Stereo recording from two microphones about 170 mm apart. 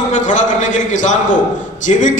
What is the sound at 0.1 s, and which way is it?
A man's voice, 45° left (ahead or behind).